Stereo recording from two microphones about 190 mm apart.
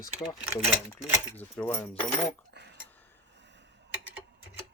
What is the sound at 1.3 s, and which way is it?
Speech, 10° left (ahead or behind).